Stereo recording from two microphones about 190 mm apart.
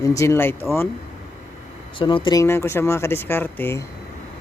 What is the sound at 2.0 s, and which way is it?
Speech, 25° left (ahead or behind).